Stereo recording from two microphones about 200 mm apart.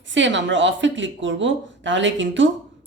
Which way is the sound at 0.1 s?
65° right (ahead or behind).